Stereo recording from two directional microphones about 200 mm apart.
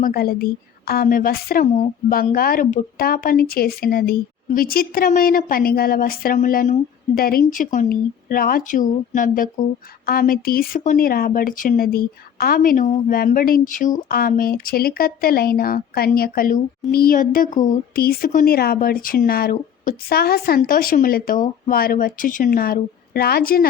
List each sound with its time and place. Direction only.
0.0 s speech: 50° left (ahead or behind)